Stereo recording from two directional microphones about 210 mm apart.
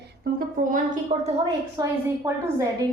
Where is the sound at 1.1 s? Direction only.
30° right (ahead or behind).